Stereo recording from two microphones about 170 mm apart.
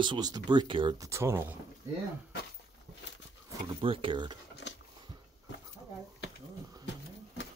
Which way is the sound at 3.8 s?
30° right (ahead or behind).